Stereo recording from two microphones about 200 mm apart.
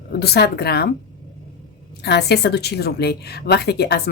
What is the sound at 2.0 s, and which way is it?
A woman's voice, 55° left (ahead or behind).